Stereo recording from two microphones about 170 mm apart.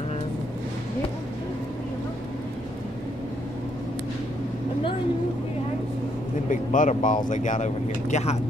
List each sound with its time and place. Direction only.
6.5 s speech: 50° left (ahead or behind)